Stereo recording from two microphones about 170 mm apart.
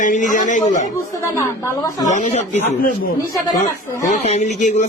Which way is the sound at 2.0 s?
45° left (ahead or behind).